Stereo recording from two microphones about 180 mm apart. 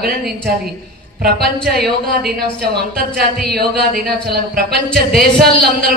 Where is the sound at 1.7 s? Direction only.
60° right (ahead or behind).